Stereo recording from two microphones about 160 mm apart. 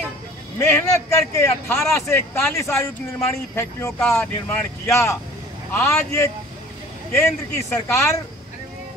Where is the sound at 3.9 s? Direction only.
5° left (ahead or behind).